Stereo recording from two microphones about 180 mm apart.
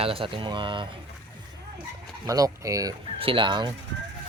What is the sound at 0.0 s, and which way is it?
Speech, 30° right (ahead or behind).